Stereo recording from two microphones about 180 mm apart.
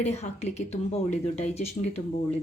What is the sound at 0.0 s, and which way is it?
A woman's voice, 40° left (ahead or behind).